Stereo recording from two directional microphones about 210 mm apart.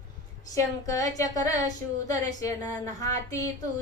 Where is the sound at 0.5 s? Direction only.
15° left (ahead or behind).